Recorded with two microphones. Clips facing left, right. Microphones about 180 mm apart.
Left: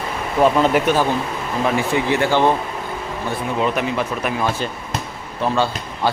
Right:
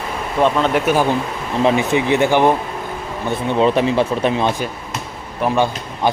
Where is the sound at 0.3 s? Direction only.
5° left (ahead or behind).